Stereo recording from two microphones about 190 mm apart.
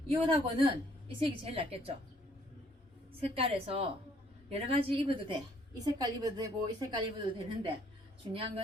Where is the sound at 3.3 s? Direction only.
30° right (ahead or behind).